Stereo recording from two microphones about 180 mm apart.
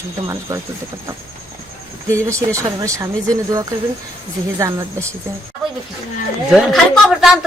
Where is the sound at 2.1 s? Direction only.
15° right (ahead or behind).